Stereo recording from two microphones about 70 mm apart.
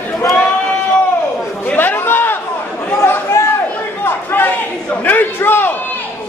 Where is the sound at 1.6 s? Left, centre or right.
Left.